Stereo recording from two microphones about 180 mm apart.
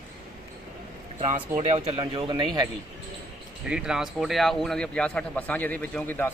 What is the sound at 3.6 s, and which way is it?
A man's voice, 5° right (ahead or behind).